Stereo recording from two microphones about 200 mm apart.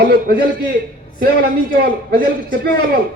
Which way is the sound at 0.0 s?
50° right (ahead or behind).